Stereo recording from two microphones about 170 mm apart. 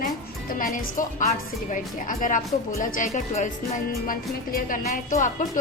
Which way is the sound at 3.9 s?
60° left (ahead or behind).